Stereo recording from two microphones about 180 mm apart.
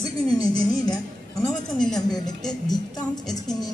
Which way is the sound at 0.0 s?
20° left (ahead or behind).